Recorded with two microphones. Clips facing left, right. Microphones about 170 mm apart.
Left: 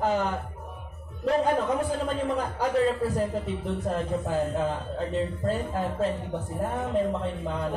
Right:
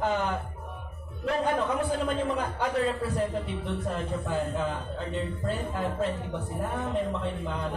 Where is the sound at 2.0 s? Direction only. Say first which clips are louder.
Left 1 dB; 40° left (ahead or behind).